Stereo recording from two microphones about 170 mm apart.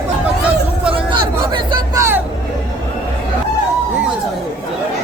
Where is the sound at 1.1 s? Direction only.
25° right (ahead or behind).